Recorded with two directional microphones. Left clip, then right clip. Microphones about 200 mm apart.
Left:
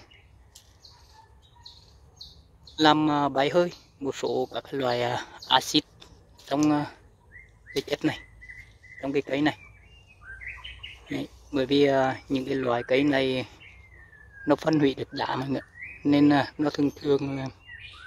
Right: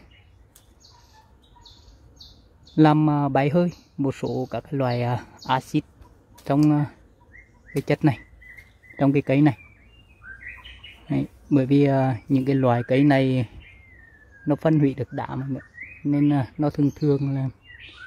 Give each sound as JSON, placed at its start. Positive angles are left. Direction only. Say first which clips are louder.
{"t": 2.8, "sound": "speech", "louder": "right 2 dB", "side_deg": 0}
{"t": 11.1, "sound": "speech", "louder": "right 10 dB", "side_deg": 0}
{"t": 14.5, "sound": "speech", "louder": "right 1 dB", "side_deg": 5}
{"t": 15.3, "sound": "speech", "louder": "left 3 dB", "side_deg": 20}
{"t": 16.1, "sound": "speech", "louder": "left 2 dB", "side_deg": 10}